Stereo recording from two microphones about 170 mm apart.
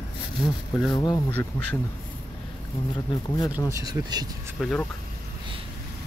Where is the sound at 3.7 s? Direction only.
20° right (ahead or behind).